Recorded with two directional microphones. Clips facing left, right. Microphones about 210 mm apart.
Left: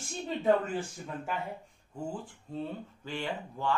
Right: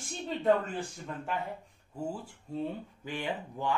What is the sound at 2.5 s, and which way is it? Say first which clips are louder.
Speech: right 2 dB; 15° right (ahead or behind).